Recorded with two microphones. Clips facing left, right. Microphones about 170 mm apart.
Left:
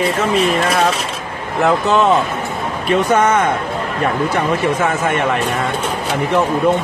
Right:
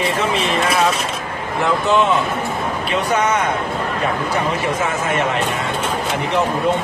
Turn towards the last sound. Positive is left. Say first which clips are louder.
# left 2 dB
turn(degrees=55)  # may be behind; listen again after turning